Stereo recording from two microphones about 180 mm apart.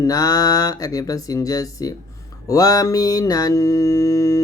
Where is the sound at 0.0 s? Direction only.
20° left (ahead or behind).